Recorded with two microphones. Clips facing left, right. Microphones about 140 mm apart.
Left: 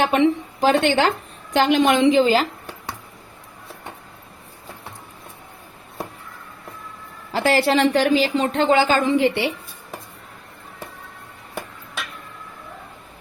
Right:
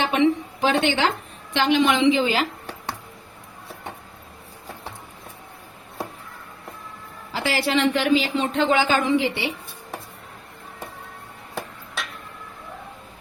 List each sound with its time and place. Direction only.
0.1 s a woman's voice: 40° left (ahead or behind)
7.3 s speech: 40° left (ahead or behind)
9.2 s a woman's voice: 55° left (ahead or behind)